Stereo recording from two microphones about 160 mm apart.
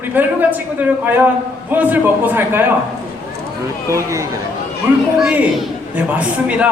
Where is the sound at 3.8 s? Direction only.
20° right (ahead or behind).